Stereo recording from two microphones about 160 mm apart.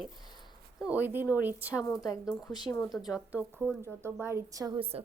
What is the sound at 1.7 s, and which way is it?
A woman's voice, 20° left (ahead or behind).